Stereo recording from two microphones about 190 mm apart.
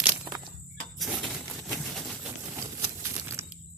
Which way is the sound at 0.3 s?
25° right (ahead or behind).